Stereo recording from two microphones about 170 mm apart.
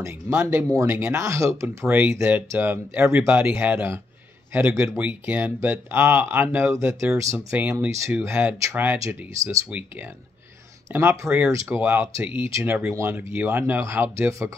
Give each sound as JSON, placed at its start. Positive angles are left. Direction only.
{"t": 0.0, "sound": "speech", "side_deg": -15}
{"t": 10.9, "sound": "speech", "side_deg": -15}